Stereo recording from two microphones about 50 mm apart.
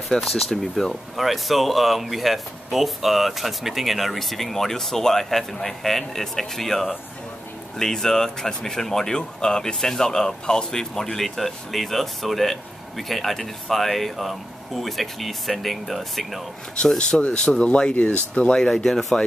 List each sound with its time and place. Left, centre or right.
0.1 s speech: centre
16.8 s speech: centre
18.6 s speech: centre